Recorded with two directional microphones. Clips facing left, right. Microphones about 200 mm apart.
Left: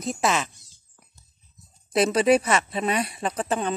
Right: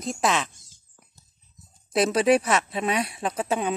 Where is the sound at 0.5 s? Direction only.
50° right (ahead or behind).